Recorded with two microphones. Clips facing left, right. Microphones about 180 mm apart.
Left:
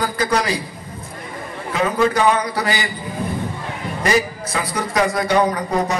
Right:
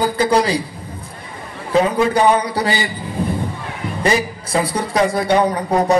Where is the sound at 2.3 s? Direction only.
30° right (ahead or behind).